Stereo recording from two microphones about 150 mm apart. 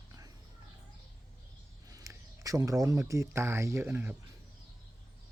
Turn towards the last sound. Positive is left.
turn(degrees=-15)  # may be behind; listen again after turning